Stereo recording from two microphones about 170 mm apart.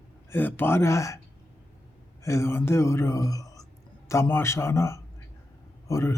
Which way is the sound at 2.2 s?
15° left (ahead or behind).